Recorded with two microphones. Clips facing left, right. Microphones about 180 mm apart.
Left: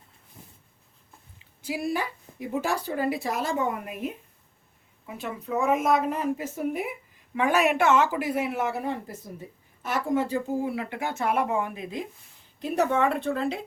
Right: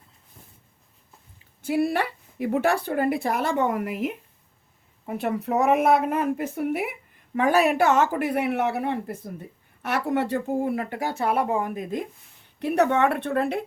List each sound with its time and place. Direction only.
1.6 s speech: 60° right (ahead or behind); by 4.2 s 80° right
5.0 s speech: 60° right (ahead or behind)
7.3 s speech: 40° right (ahead or behind)
12.5 s speech: 65° right (ahead or behind)